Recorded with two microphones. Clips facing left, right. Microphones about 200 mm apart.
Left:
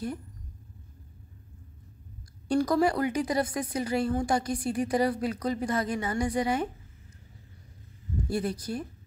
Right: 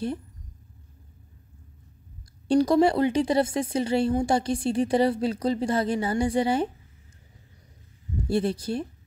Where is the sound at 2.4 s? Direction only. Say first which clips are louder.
Right 5 dB; 25° right (ahead or behind).